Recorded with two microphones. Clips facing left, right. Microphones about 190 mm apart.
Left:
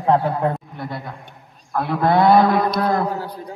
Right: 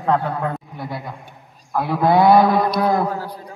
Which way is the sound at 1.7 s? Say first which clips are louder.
Right 1 dB; 5° right (ahead or behind).